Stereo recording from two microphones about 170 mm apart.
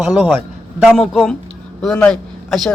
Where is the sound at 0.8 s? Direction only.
Centre (ahead or behind).